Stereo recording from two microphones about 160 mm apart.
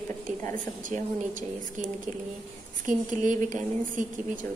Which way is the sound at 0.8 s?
55° right (ahead or behind).